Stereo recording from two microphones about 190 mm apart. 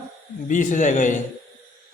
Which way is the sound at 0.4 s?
40° left (ahead or behind).